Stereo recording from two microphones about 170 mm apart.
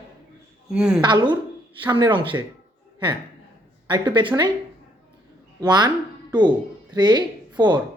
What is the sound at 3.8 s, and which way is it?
Speech, 25° right (ahead or behind).